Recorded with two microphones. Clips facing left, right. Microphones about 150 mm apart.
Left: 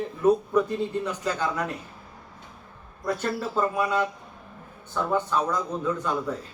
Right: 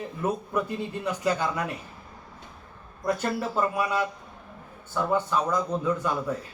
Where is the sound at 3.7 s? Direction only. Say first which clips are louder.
Left 2 dB; 10° right (ahead or behind).